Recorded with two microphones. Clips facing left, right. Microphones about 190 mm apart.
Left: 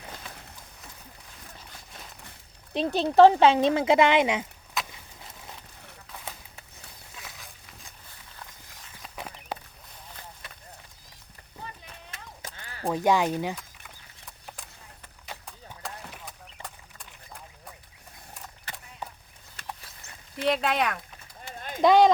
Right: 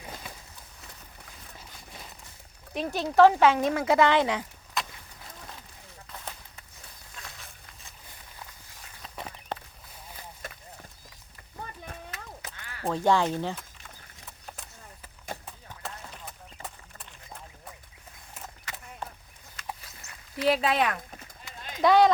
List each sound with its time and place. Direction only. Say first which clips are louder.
2.7 s speech: left 3 dB; 25° left (ahead or behind)
4.8 s vehicle: even; centre (ahead or behind)
7.2 s a sound: even; centre (ahead or behind)
9.1 s horse: even; 5° left (ahead or behind)
10.4 s a sound: right 6 dB; 45° right (ahead or behind)
11.6 s clip-clop: right 3 dB; 50° right (ahead or behind)
12.9 s speech: left 1 dB; 15° left (ahead or behind)
13.6 s horse: even; centre (ahead or behind)
15.3 s clip-clop: right 4 dB; 50° right (ahead or behind)
16.2 s clip-clop: right 1 dB; centre (ahead or behind)
20.3 s speech: right 1 dB; centre (ahead or behind)
21.8 s speech: left 2 dB; 20° left (ahead or behind)